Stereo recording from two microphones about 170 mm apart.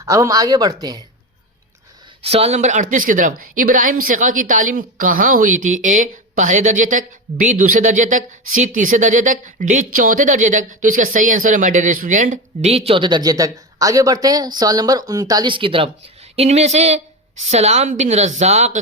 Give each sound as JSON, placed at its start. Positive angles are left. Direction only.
{"t": 0.0, "sound": "speech", "side_deg": -20}
{"t": 2.2, "sound": "speech", "side_deg": -35}